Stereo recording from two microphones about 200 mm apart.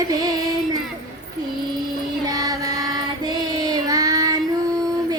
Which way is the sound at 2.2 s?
20° right (ahead or behind).